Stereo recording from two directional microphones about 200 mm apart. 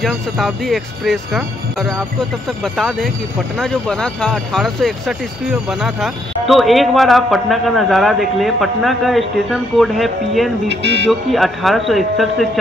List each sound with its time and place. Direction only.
0.0 s speech: centre (ahead or behind)
10.7 s speech: 60° right (ahead or behind)
11.1 s speech: centre (ahead or behind)